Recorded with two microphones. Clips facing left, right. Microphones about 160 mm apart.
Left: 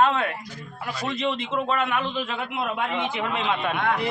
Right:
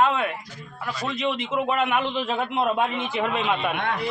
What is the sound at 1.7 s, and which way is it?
Speech, 20° right (ahead or behind).